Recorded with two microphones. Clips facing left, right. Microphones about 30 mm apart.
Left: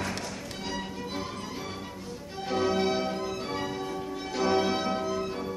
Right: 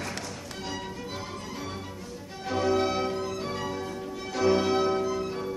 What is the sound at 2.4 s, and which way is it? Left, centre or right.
Music, centre.